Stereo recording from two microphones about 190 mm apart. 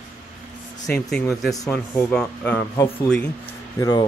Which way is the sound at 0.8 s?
5° left (ahead or behind).